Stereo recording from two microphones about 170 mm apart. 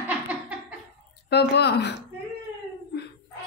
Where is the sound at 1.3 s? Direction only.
80° left.